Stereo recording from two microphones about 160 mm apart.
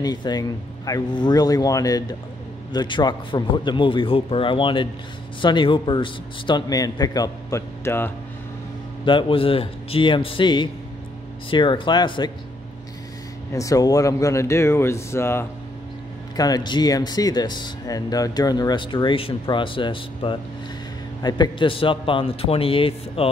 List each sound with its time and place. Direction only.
0.0 s speech: 25° left (ahead or behind)
9.0 s speech: 30° left (ahead or behind)
13.5 s speech: 20° left (ahead or behind)